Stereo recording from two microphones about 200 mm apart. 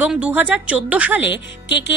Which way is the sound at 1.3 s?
65° left (ahead or behind).